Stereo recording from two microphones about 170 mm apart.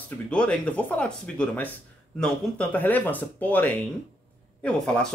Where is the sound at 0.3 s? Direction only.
5° left (ahead or behind).